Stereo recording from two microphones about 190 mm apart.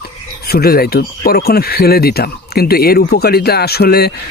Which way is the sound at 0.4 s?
55° left (ahead or behind).